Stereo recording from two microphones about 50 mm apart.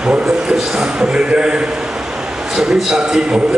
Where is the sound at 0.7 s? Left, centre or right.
Centre.